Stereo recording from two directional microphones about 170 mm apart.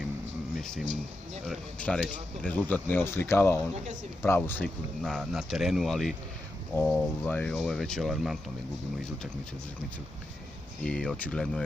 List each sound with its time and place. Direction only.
0.6 s speech: centre (ahead or behind)
3.7 s speech: 40° right (ahead or behind)
4.2 s speech: 15° left (ahead or behind)
10.8 s speech: 5° left (ahead or behind)